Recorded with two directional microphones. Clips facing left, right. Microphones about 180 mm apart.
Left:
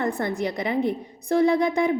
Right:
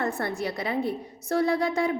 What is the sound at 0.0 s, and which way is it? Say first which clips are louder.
A woman's voice: left 3 dB; 15° left (ahead or behind).